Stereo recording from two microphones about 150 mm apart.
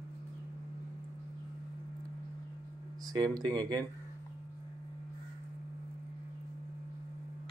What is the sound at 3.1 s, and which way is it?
Speech, 25° right (ahead or behind).